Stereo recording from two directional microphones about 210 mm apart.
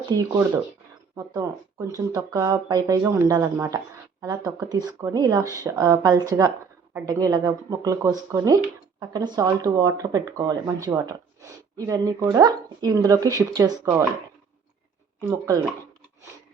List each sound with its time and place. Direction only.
0.1 s speech: 15° right (ahead or behind)
15.2 s speech: 15° right (ahead or behind)